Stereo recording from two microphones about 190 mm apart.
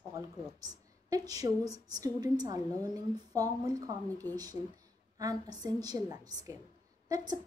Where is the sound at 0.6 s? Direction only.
20° right (ahead or behind).